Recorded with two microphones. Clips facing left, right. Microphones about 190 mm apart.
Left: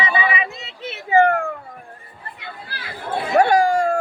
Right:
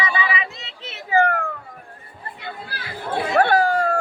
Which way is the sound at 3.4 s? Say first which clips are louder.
Left 3 dB; 15° left (ahead or behind).